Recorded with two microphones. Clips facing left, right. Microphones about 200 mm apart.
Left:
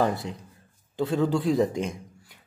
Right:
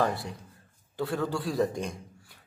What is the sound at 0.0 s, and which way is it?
A man's voice, 20° left (ahead or behind).